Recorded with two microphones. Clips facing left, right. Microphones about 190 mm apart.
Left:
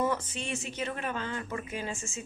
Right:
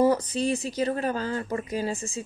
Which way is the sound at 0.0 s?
35° right (ahead or behind).